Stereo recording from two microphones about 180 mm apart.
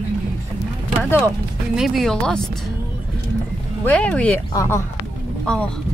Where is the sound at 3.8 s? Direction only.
5° left (ahead or behind).